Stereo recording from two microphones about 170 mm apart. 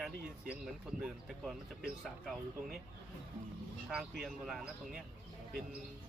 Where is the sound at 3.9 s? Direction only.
Centre (ahead or behind).